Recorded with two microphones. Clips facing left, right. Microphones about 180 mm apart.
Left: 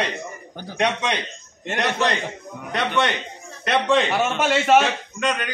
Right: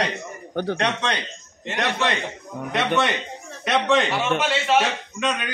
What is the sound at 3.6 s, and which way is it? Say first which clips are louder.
Speech: left 1 dB; centre (ahead or behind).